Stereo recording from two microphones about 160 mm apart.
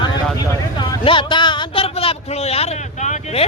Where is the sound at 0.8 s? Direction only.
30° left (ahead or behind).